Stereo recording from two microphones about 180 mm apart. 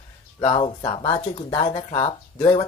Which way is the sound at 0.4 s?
30° left (ahead or behind).